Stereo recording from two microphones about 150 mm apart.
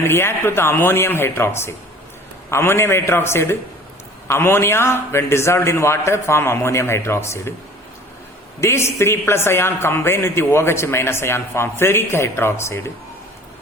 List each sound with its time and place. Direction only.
0.0 s a man's voice: 15° left (ahead or behind)
8.6 s a man's voice: 20° left (ahead or behind)